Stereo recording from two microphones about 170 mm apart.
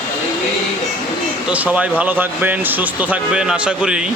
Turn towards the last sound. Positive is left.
turn(degrees=-5)  # may be behind; listen again after turning